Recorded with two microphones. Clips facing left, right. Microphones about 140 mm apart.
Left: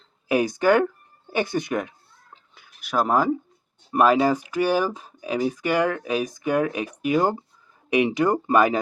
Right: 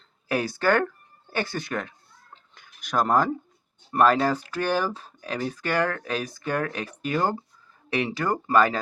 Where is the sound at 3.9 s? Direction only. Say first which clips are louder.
Left 2 dB; 10° left (ahead or behind).